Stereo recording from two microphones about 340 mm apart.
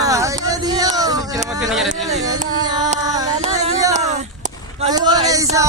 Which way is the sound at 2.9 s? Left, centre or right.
Centre.